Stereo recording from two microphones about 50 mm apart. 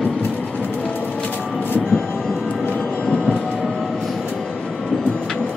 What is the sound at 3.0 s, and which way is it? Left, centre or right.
Train, centre.